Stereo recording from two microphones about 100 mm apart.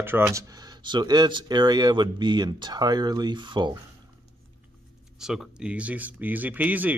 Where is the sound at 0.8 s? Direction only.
50° right (ahead or behind).